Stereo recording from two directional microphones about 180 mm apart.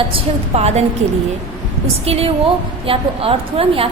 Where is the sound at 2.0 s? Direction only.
35° right (ahead or behind).